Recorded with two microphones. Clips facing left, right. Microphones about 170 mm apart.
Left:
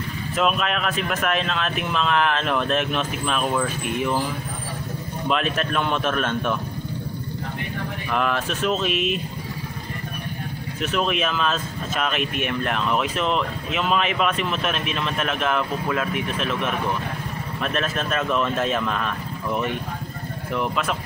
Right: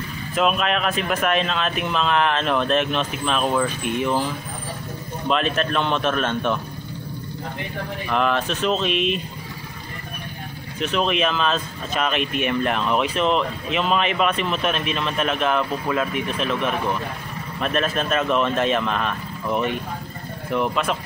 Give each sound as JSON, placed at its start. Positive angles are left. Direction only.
{"t": 0.4, "sound": "speech", "side_deg": 0}
{"t": 5.3, "sound": "speech", "side_deg": 5}
{"t": 8.1, "sound": "speech", "side_deg": 5}
{"t": 10.8, "sound": "speech", "side_deg": 5}